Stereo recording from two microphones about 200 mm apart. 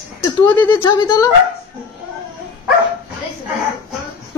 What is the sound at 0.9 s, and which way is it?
Speech, 20° left (ahead or behind).